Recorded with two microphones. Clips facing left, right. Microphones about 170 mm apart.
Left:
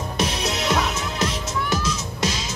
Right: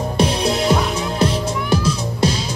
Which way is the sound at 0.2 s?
30° right (ahead or behind).